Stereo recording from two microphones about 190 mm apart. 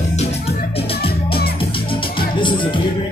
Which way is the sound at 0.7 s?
30° left (ahead or behind).